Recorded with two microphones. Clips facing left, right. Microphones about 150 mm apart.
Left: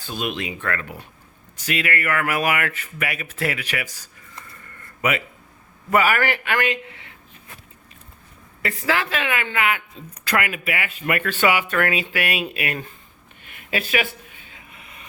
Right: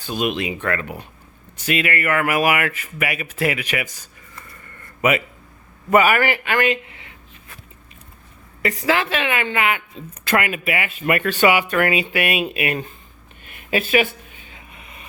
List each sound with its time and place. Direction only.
0.0 s speech: 15° right (ahead or behind)
6.4 s speech: centre (ahead or behind)
8.6 s speech: 20° right (ahead or behind)
13.5 s a sound: 25° right (ahead or behind)